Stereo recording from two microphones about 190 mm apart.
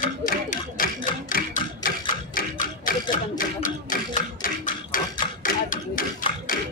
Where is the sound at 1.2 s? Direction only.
45° left (ahead or behind).